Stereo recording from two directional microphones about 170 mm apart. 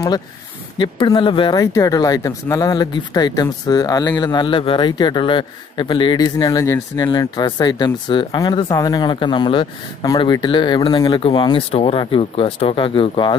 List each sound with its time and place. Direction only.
0.7 s speech: 25° left (ahead or behind)